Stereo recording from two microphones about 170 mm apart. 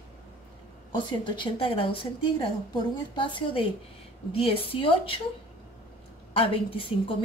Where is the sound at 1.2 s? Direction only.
30° left (ahead or behind).